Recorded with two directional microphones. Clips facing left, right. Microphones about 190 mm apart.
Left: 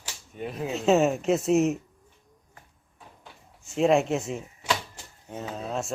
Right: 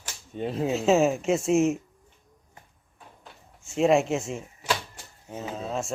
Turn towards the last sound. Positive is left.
turn(degrees=0)  # may be behind; listen again after turning